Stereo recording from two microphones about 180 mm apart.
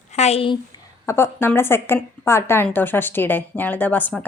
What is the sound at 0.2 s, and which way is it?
Speech, 35° left (ahead or behind).